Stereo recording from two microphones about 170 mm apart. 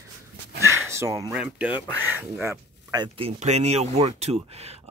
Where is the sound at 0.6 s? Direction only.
15° right (ahead or behind).